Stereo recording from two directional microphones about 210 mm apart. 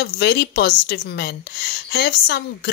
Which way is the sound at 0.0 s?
50° left (ahead or behind).